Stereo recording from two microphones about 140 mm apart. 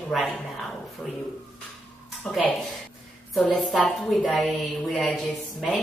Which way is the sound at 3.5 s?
Centre (ahead or behind).